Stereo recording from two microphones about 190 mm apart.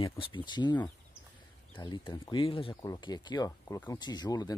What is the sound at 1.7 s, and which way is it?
Speech, 25° left (ahead or behind).